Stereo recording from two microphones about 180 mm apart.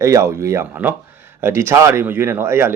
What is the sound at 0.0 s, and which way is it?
Speech, 15° right (ahead or behind).